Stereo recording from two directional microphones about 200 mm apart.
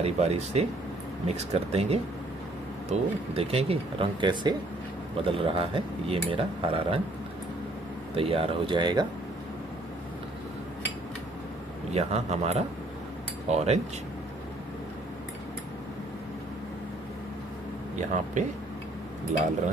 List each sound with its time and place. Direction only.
0.0 s speech: 30° right (ahead or behind)
8.1 s speech: 30° right (ahead or behind)
11.9 s speech: 35° right (ahead or behind)
17.9 s speech: 40° right (ahead or behind)